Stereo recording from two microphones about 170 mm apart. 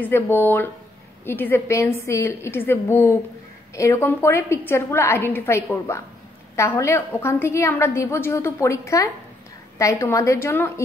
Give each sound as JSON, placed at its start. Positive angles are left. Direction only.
{"t": 0.0, "sound": "a woman's voice", "side_deg": 10}